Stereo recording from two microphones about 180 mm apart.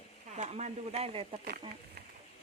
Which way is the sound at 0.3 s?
40° right (ahead or behind).